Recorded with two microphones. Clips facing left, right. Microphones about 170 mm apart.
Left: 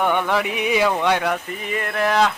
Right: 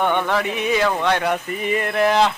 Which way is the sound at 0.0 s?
5° left (ahead or behind).